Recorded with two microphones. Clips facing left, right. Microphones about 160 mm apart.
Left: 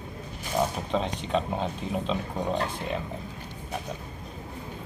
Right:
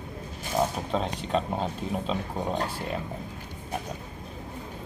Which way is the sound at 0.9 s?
Centre (ahead or behind).